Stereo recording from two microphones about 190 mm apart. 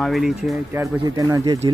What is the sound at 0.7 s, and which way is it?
Speech, 20° right (ahead or behind).